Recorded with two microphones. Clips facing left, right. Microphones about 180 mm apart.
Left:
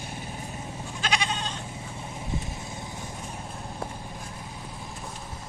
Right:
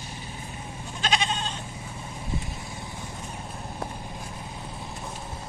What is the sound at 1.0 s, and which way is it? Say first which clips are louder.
Goat: right 2 dB; 25° right (ahead or behind).